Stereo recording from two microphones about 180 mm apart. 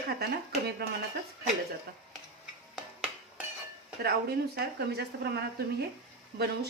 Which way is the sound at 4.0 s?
60° right (ahead or behind).